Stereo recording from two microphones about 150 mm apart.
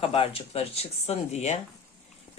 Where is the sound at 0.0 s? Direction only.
40° left (ahead or behind).